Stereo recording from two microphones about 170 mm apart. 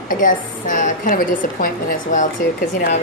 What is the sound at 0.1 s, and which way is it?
A woman's voice, 50° left (ahead or behind).